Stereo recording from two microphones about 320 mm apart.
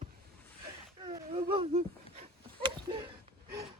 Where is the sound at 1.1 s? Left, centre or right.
Centre.